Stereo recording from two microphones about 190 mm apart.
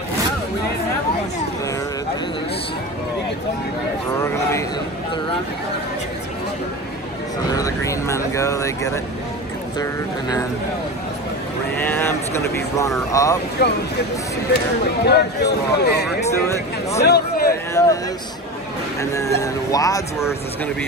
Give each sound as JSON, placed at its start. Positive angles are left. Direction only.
{"t": 4.2, "sound": "speech", "side_deg": 15}
{"t": 7.5, "sound": "speech", "side_deg": 15}
{"t": 11.8, "sound": "speech", "side_deg": 10}
{"t": 13.6, "sound": "speech", "side_deg": 55}
{"t": 15.0, "sound": "speech", "side_deg": 60}
{"t": 16.3, "sound": "speech", "side_deg": 15}
{"t": 17.0, "sound": "a man's voice", "side_deg": 55}
{"t": 17.8, "sound": "speech", "side_deg": 15}
{"t": 18.9, "sound": "speech", "side_deg": 15}